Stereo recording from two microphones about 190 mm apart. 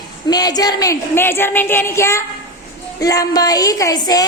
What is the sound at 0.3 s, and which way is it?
A woman's voice, 20° left (ahead or behind).